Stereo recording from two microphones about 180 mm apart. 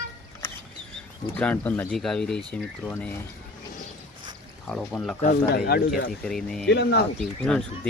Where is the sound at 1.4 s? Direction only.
10° left (ahead or behind).